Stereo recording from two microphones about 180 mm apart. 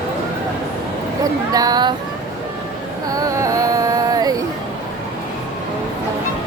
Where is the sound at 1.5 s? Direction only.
20° right (ahead or behind).